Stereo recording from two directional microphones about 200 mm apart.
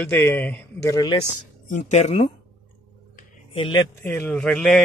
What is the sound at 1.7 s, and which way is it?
Speech, 35° left (ahead or behind).